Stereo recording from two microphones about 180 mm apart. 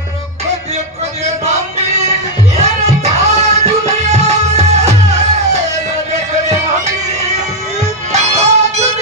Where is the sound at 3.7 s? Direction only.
35° right (ahead or behind).